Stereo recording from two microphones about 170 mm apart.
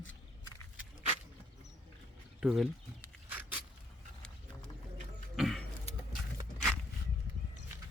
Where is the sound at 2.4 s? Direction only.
Centre (ahead or behind).